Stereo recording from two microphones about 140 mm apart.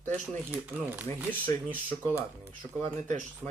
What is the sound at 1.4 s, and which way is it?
Speech, 10° left (ahead or behind).